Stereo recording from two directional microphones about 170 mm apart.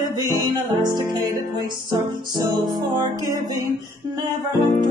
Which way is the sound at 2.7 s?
25° right (ahead or behind).